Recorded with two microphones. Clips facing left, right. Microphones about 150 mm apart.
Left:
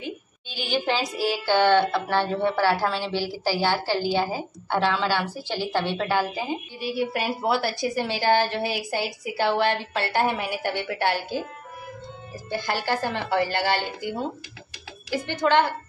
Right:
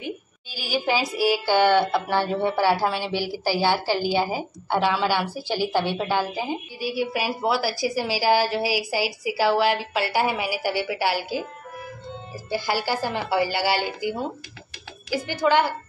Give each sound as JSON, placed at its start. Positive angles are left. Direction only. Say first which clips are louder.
{"t": 0.0, "sound": "a woman's voice", "louder": "right 1 dB", "side_deg": -5}
{"t": 6.8, "sound": "a woman's voice", "louder": "right 1 dB", "side_deg": 0}
{"t": 12.4, "sound": "a woman's voice", "louder": "right 1 dB", "side_deg": -5}